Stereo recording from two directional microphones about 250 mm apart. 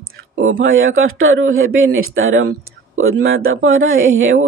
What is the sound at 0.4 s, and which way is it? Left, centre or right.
Speech, right.